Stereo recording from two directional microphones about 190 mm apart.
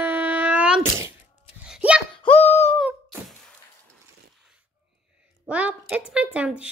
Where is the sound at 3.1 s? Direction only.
Centre (ahead or behind).